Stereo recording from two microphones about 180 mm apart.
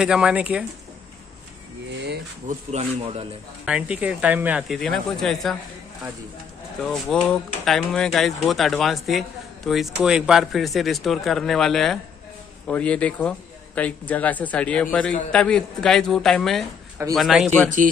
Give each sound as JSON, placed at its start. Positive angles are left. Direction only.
{"t": 0.0, "sound": "speech", "side_deg": -5}
{"t": 2.4, "sound": "speech", "side_deg": -35}
{"t": 3.6, "sound": "speech", "side_deg": -5}
{"t": 4.7, "sound": "speech", "side_deg": 5}
{"t": 6.8, "sound": "a man's voice", "side_deg": 5}